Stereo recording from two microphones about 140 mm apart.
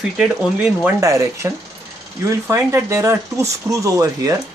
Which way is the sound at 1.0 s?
20° right (ahead or behind).